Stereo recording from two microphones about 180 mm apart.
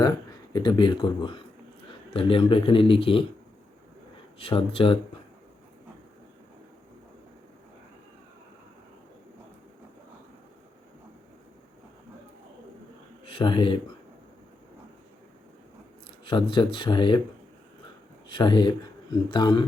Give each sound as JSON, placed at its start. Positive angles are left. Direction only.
{"t": 0.5, "sound": "a man's voice", "side_deg": 25}
{"t": 4.4, "sound": "a man's voice", "side_deg": 30}
{"t": 13.2, "sound": "speech", "side_deg": 30}
{"t": 16.2, "sound": "a man's voice", "side_deg": 30}
{"t": 18.3, "sound": "a man's voice", "side_deg": 25}